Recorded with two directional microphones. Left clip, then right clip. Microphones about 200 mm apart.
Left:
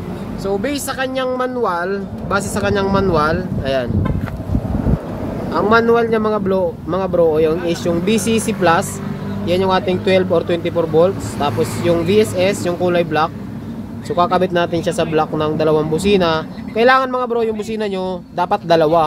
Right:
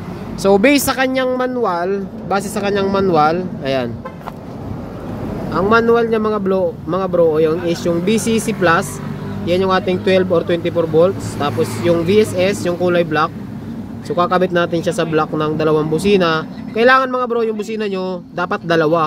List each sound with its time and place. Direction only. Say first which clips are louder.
0.4 s speech: right 9 dB; 40° right (ahead or behind); by 3.9 s 20° right (ahead or behind)
5.5 s speech: even; 10° right (ahead or behind)